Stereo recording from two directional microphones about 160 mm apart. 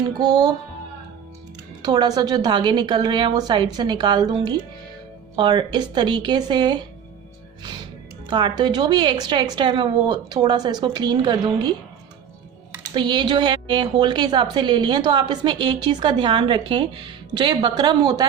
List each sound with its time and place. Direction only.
0.0 s a woman's voice: 25° right (ahead or behind)
1.8 s a woman's voice: 25° right (ahead or behind)
8.3 s a woman's voice: 30° right (ahead or behind)
12.9 s a woman's voice: 30° right (ahead or behind)